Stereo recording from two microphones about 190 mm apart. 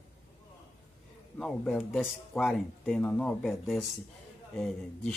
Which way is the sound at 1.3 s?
Centre (ahead or behind).